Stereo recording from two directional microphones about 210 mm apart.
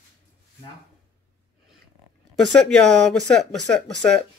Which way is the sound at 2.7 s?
Centre (ahead or behind).